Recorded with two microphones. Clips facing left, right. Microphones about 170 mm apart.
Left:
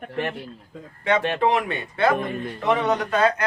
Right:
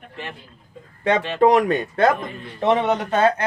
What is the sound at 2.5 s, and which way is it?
Speech, 25° right (ahead or behind).